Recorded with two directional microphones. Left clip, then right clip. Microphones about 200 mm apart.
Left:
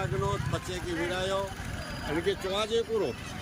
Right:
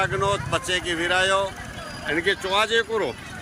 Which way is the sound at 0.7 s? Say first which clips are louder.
Right 10 dB; 5° right (ahead or behind).